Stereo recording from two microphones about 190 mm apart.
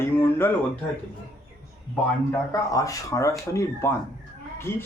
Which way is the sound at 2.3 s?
15° left (ahead or behind).